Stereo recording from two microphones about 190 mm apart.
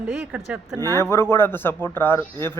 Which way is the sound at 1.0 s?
15° left (ahead or behind).